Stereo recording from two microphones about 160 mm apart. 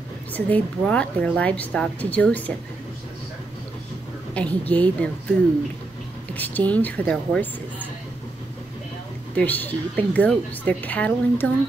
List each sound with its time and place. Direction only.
0.3 s a woman's voice: 10° left (ahead or behind)
4.3 s a woman's voice: 10° left (ahead or behind)
6.3 s a woman's voice: 10° left (ahead or behind)
9.4 s a woman's voice: 10° left (ahead or behind)